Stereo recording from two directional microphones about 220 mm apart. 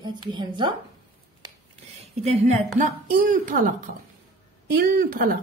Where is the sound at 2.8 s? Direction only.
40° right (ahead or behind).